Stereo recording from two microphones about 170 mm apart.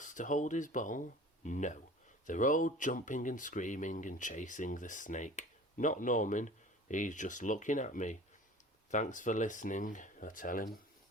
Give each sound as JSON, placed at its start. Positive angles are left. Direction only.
{"t": 0.0, "sound": "speech", "side_deg": 50}